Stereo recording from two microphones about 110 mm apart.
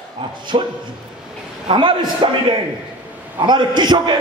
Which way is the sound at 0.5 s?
55° right (ahead or behind).